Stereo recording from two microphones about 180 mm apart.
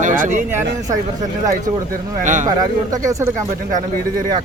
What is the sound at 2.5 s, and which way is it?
Speech, 20° right (ahead or behind).